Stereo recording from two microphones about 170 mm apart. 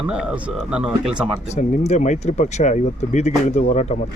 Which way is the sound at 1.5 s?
45° left (ahead or behind).